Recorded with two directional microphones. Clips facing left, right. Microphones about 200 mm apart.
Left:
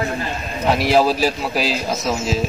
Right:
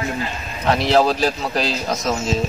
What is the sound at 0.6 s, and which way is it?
A man's voice, 10° left (ahead or behind).